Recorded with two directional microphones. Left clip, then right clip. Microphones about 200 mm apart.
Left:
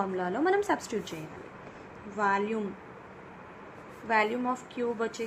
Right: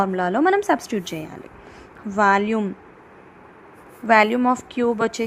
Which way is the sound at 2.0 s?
55° right (ahead or behind).